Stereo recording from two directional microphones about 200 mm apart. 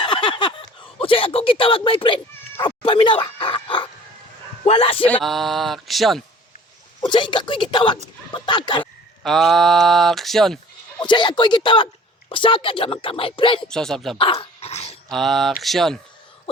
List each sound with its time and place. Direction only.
0.0 s a sound: 25° left (ahead or behind)
0.9 s speech: 25° left (ahead or behind)
5.0 s speech: 5° left (ahead or behind)
7.0 s speech: 25° left (ahead or behind)
8.8 s speech: centre (ahead or behind)
11.0 s speech: 25° left (ahead or behind)
13.7 s speech: 5° left (ahead or behind)
14.2 s dog: 25° left (ahead or behind)
15.1 s speech: centre (ahead or behind)